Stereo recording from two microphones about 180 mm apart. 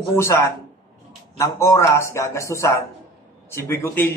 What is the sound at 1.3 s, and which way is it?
A man's voice, 15° left (ahead or behind).